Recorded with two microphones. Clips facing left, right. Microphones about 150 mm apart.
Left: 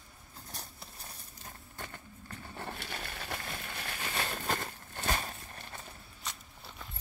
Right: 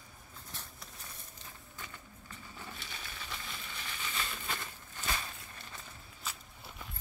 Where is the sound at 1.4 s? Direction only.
55° left (ahead or behind).